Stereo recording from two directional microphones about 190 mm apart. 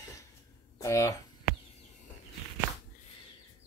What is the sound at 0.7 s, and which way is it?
Speech, 15° left (ahead or behind).